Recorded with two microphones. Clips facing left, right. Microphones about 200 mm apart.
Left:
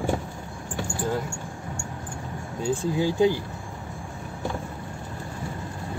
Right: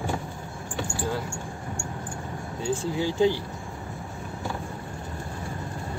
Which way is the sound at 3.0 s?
15° left (ahead or behind).